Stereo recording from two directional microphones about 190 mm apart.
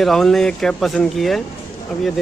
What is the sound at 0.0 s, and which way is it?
Speech, centre (ahead or behind).